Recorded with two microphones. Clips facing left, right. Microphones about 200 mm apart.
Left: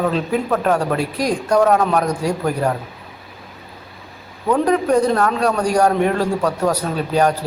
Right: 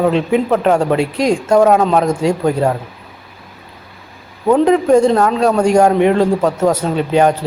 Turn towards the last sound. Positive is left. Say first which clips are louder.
# right 4 dB
turn(degrees=-25)  # may be behind; listen again after turning